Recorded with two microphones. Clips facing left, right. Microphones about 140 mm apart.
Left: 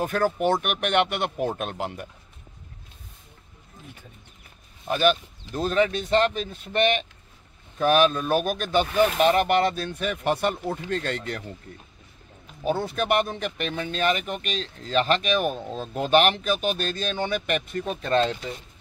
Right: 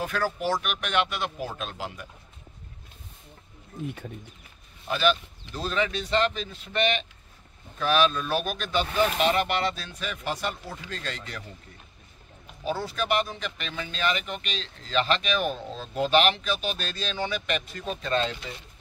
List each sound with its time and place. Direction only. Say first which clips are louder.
0.0 s speech: left 5 dB; 50° left (ahead or behind)
4.8 s speech: left 3 dB; 45° left (ahead or behind)
12.8 s speech: left 1 dB; 55° left (ahead or behind)
18.2 s speech: left 5 dB; 35° left (ahead or behind)